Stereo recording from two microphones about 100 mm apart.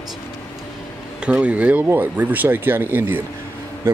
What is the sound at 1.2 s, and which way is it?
Speech, 10° right (ahead or behind).